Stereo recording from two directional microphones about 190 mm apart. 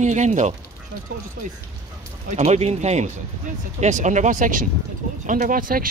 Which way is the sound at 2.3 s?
35° right (ahead or behind).